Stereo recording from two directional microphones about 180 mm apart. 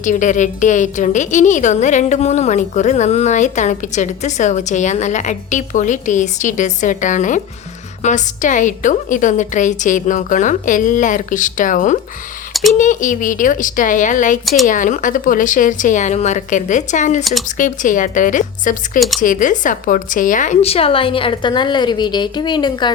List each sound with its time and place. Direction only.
0.0 s a woman's voice: 45° left (ahead or behind)
14.4 s speech: centre (ahead or behind)
14.7 s a woman's voice: 45° left (ahead or behind)
18.9 s speech: centre (ahead or behind)
19.2 s a woman's voice: 45° left (ahead or behind); by 22.9 s 25° left (ahead or behind)